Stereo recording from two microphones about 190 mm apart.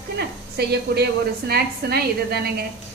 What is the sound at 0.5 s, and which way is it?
A woman's voice, 60° right (ahead or behind).